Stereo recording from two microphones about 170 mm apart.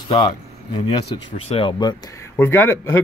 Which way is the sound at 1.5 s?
30° left (ahead or behind).